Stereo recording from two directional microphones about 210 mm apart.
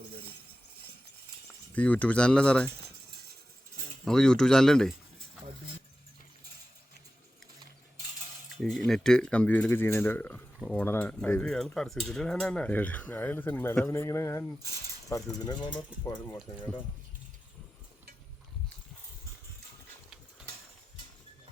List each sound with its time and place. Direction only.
1.7 s speech: 5° left (ahead or behind)
4.0 s speech: 5° left (ahead or behind)
8.5 s cutlery: centre (ahead or behind)
15.4 s speech: 20° left (ahead or behind)